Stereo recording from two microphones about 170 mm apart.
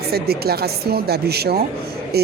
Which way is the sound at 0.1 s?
65° right (ahead or behind).